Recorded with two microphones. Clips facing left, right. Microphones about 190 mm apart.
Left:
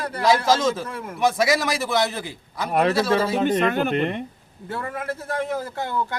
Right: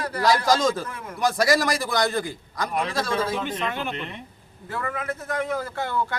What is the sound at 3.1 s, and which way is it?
Speech, 70° left (ahead or behind).